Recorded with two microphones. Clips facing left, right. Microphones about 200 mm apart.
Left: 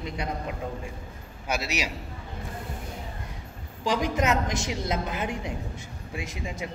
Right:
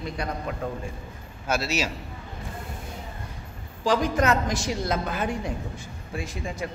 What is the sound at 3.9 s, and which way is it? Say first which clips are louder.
A woman's voice: right 3 dB; 20° left (ahead or behind).